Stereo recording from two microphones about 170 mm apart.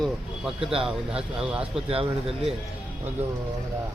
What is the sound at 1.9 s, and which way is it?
Speech, 35° right (ahead or behind).